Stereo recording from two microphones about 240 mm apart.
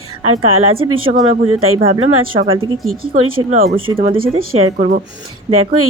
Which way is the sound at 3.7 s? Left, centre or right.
Right.